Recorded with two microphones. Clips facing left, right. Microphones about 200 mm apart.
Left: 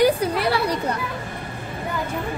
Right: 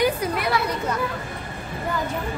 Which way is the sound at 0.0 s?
30° left (ahead or behind).